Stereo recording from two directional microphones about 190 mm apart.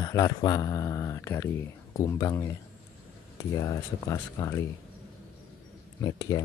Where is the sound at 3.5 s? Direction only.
15° left (ahead or behind).